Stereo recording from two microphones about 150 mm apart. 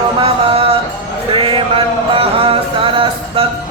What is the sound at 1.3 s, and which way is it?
Mantra, 35° right (ahead or behind).